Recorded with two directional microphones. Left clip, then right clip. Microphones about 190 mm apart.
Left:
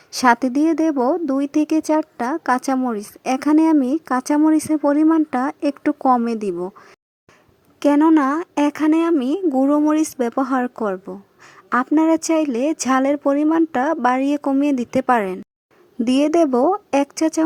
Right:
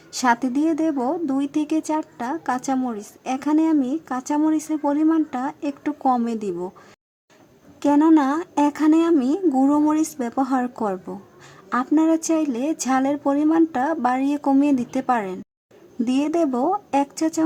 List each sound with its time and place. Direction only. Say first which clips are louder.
0.2 s a woman's voice: left 4 dB; 35° left (ahead or behind)